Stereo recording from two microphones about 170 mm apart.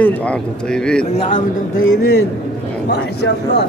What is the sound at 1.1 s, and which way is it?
Speech, 40° left (ahead or behind).